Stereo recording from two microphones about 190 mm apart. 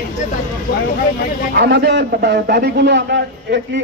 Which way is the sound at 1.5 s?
65° right (ahead or behind).